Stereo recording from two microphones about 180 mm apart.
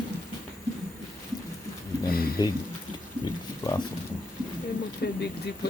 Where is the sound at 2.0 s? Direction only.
55° left (ahead or behind).